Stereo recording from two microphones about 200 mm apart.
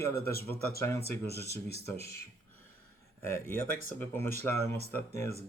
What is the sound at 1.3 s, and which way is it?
Speech, 55° left (ahead or behind).